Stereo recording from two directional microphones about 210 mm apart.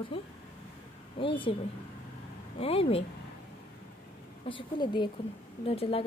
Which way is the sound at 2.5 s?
30° left (ahead or behind).